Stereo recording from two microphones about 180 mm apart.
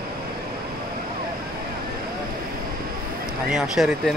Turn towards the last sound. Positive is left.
turn(degrees=0)  # may be behind; listen again after turning